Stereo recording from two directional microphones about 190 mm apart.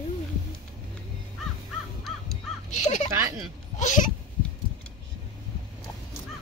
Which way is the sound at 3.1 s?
15° right (ahead or behind).